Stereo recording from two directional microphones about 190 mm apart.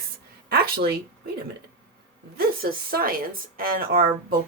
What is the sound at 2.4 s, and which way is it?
Speech, 55° right (ahead or behind).